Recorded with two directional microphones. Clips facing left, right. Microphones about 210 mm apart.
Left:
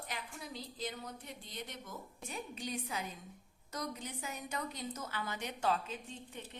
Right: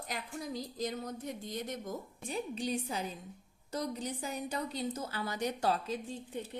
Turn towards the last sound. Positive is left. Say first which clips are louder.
# right 8 dB
turn(degrees=-35)  # may be behind; listen again after turning